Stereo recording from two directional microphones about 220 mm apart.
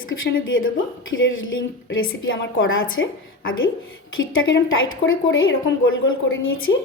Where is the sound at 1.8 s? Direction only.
65° left (ahead or behind).